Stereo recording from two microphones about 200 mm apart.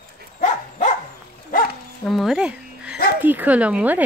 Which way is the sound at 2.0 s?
Centre (ahead or behind).